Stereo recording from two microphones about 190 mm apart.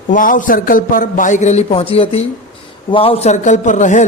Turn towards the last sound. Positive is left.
turn(degrees=40)  # may be behind; listen again after turning